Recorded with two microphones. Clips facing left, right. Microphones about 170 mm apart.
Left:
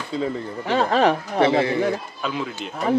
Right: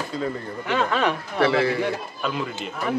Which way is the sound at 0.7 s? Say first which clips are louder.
Left 4 dB; 35° left (ahead or behind).